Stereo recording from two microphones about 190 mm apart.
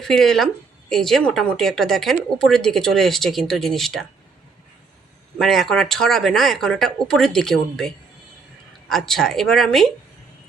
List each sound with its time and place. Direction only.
0.0 s speech: centre (ahead or behind)
5.4 s speech: centre (ahead or behind)